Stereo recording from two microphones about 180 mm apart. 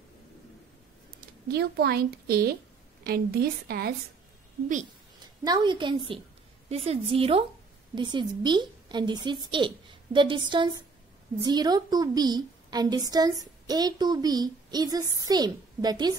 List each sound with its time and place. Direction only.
1.5 s a woman's voice: 60° right (ahead or behind)
5.2 s a woman's voice: 20° right (ahead or behind)